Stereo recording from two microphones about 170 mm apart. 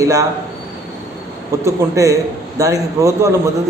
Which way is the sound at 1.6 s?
20° right (ahead or behind).